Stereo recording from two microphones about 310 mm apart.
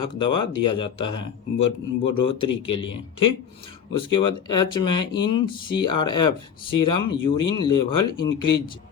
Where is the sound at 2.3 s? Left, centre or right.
Left.